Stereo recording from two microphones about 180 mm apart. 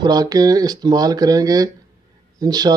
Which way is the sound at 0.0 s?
20° right (ahead or behind).